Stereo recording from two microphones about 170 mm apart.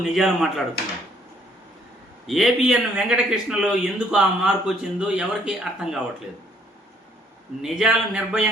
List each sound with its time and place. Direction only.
0.1 s a man's voice: centre (ahead or behind)
2.2 s a man's voice: centre (ahead or behind)
7.6 s a man's voice: 5° right (ahead or behind)